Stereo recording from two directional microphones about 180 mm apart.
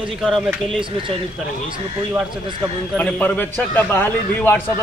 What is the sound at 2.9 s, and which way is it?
A man's voice, 10° left (ahead or behind).